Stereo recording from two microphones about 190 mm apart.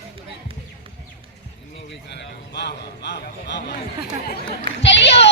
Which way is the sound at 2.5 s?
60° left (ahead or behind).